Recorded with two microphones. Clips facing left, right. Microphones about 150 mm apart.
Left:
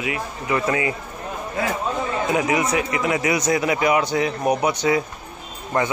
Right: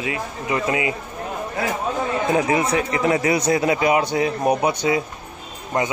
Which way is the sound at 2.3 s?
30° right (ahead or behind).